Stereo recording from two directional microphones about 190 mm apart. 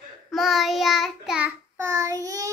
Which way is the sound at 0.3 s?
Centre (ahead or behind).